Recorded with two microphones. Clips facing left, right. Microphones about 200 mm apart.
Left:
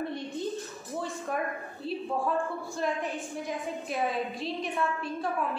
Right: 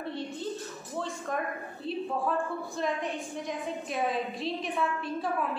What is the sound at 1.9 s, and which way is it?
A woman's voice, centre (ahead or behind).